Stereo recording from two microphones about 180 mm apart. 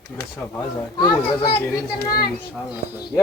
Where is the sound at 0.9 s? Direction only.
25° left (ahead or behind).